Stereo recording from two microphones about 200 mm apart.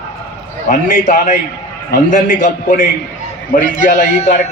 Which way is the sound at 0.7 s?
40° left (ahead or behind).